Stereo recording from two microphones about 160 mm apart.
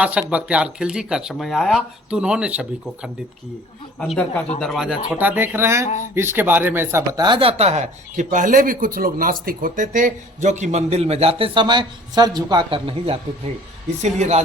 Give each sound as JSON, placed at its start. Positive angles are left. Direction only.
{"t": 0.0, "sound": "speech", "side_deg": -5}
{"t": 4.0, "sound": "speech", "side_deg": 5}
{"t": 14.0, "sound": "speech", "side_deg": -45}